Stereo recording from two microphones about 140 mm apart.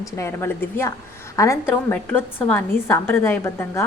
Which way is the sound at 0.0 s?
20° left (ahead or behind).